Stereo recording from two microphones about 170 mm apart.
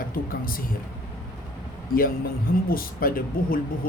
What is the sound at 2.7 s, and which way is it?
Mantra, 55° left (ahead or behind).